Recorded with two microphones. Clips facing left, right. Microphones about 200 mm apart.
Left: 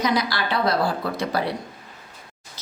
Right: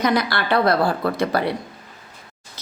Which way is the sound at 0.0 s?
60° right (ahead or behind).